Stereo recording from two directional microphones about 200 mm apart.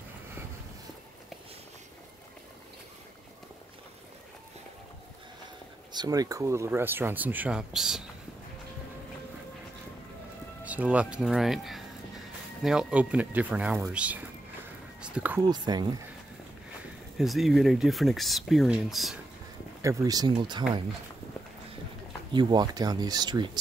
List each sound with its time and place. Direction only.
5.9 s speech: 20° right (ahead or behind); by 8.0 s centre (ahead or behind)
10.6 s speech: 5° right (ahead or behind)
15.4 s speech: 20° right (ahead or behind)
17.2 s speech: centre (ahead or behind)
19.8 s speech: 15° right (ahead or behind)
22.3 s speech: 20° right (ahead or behind)